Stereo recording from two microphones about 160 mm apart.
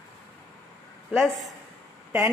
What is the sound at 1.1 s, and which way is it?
Speech, centre (ahead or behind).